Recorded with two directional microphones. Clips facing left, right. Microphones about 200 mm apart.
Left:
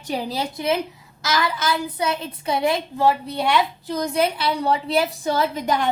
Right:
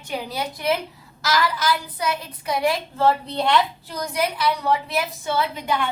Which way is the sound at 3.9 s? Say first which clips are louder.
Left 3 dB; 25° left (ahead or behind).